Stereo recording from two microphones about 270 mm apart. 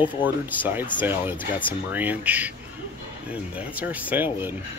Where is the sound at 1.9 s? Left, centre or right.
Centre.